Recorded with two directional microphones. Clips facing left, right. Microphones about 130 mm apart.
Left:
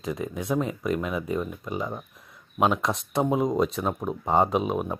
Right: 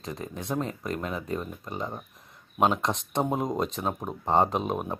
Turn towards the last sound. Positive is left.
turn(degrees=0)  # may be behind; listen again after turning